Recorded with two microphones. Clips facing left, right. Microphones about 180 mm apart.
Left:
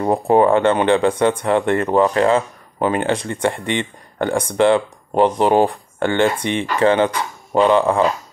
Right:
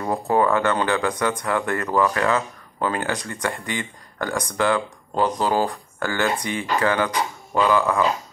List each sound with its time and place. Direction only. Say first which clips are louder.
0.0 s speech: left 6 dB; 25° left (ahead or behind)